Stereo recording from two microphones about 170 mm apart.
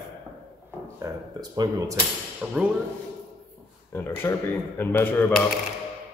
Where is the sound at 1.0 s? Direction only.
20° right (ahead or behind).